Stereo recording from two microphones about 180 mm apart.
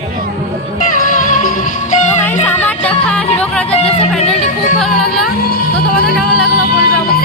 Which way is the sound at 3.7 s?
35° left (ahead or behind).